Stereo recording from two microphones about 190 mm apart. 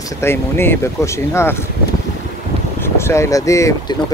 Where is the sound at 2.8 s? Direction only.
15° left (ahead or behind).